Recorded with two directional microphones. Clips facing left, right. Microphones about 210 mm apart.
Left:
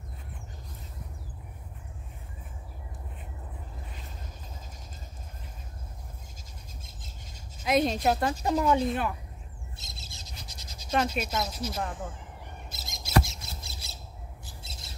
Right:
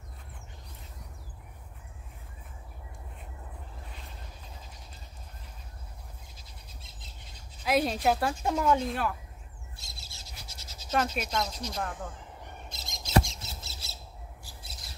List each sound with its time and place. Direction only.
6.8 s squawk: 45° left (ahead or behind)
7.6 s a woman's voice: 5° right (ahead or behind)
9.8 s bird: 20° left (ahead or behind); by 13.1 s 5° left (ahead or behind)
13.2 s mouse: 10° left (ahead or behind)
14.4 s squawk: 25° left (ahead or behind)